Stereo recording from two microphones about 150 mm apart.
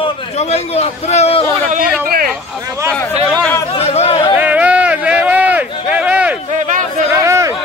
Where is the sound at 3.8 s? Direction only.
45° left (ahead or behind).